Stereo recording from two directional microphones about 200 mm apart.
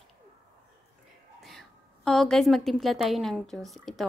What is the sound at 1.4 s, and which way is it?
A woman's voice, centre (ahead or behind).